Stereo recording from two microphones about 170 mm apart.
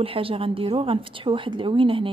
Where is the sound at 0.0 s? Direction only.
30° right (ahead or behind).